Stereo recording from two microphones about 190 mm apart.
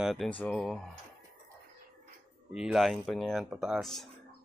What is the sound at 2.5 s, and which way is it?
Speech, centre (ahead or behind).